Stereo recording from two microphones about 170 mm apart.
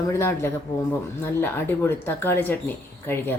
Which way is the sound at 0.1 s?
15° left (ahead or behind).